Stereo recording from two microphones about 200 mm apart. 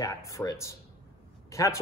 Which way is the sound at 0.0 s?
15° left (ahead or behind).